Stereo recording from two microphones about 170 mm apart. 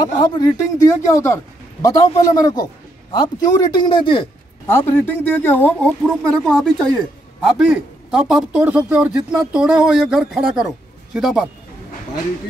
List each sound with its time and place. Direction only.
0.2 s a man's voice: 20° left (ahead or behind)
4.6 s a man's voice: 15° left (ahead or behind)